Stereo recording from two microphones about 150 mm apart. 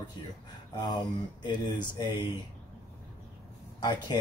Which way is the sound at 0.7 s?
30° left (ahead or behind).